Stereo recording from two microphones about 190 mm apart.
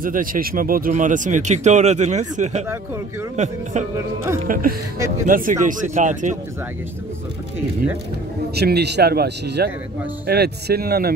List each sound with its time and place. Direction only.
0.0 s speech: 45° right (ahead or behind)
8.5 s speech: 60° right (ahead or behind)